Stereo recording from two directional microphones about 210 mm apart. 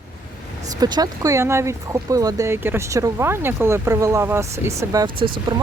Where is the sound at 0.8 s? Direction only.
15° right (ahead or behind).